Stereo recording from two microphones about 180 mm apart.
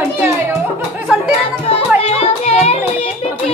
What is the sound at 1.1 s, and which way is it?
Chatter, 5° right (ahead or behind).